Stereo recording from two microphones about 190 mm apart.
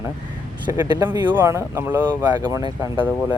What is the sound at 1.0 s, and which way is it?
Speech, 20° right (ahead or behind).